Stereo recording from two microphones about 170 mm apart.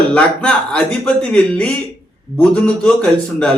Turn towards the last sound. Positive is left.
turn(degrees=5)  # may be behind; listen again after turning